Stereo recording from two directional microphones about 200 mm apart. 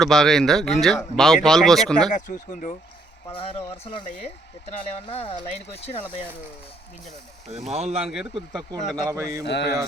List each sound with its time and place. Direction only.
0.0 s speech: centre (ahead or behind)
2.0 s speech: 40° left (ahead or behind)
3.3 s speech: 30° left (ahead or behind)
7.7 s speech: 30° right (ahead or behind)
8.0 s speech: 5° right (ahead or behind)
9.0 s a man's voice: 15° right (ahead or behind)
9.5 s mantra: 60° left (ahead or behind)